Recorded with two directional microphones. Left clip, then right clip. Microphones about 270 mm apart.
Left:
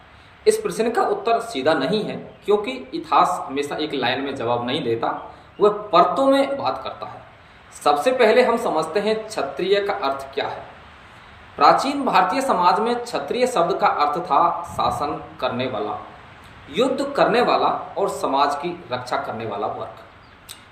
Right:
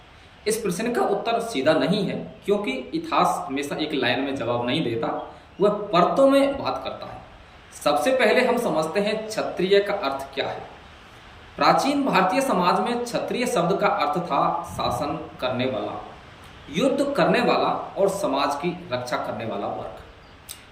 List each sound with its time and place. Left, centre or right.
0.4 s a man's voice: centre
11.6 s a man's voice: centre
16.7 s a man's voice: centre